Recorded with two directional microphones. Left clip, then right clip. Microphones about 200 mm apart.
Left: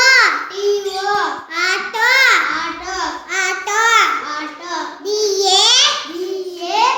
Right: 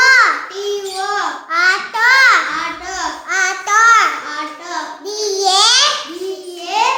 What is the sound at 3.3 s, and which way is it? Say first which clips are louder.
Child singing: right 4 dB; 15° right (ahead or behind).